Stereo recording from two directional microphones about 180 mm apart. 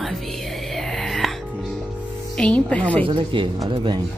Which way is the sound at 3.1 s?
30° right (ahead or behind).